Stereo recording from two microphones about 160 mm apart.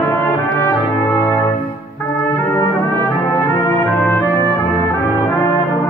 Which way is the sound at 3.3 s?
15° left (ahead or behind).